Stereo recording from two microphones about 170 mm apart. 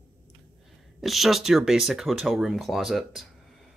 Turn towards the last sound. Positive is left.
turn(degrees=0)  # may be behind; listen again after turning